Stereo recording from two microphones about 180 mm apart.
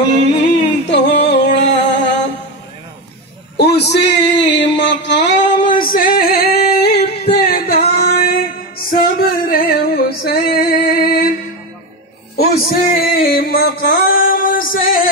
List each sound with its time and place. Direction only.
0.1 s music: 75° left (ahead or behind)
3.5 s a sound: 65° left (ahead or behind)
5.8 s singing: 50° left (ahead or behind)
7.9 s music: 60° left (ahead or behind)
12.4 s music: 55° left (ahead or behind)